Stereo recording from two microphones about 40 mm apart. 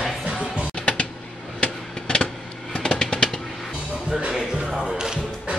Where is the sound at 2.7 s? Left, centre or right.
Centre.